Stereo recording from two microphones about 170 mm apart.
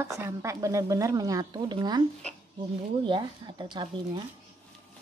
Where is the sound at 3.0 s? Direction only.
25° right (ahead or behind).